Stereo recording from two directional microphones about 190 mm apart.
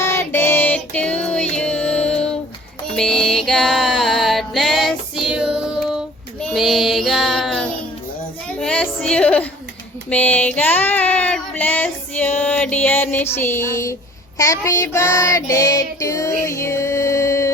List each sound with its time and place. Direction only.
0.0 s music: 15° left (ahead or behind); by 6.0 s 5° right (ahead or behind)
6.5 s child singing: centre (ahead or behind)
8.6 s music: 5° left (ahead or behind)
10.1 s child singing: 5° left (ahead or behind)
12.4 s music: 5° left (ahead or behind)
14.3 s child singing: 15° left (ahead or behind)